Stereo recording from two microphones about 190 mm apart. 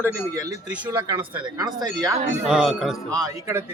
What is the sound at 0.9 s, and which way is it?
Speech, 20° right (ahead or behind).